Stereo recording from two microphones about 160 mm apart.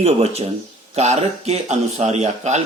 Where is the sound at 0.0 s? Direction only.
40° right (ahead or behind).